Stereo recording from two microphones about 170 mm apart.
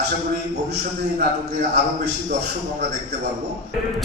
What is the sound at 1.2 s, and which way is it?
Speech, 75° right (ahead or behind).